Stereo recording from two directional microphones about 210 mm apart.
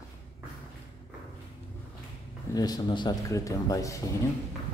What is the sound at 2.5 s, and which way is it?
Speech, 20° left (ahead or behind).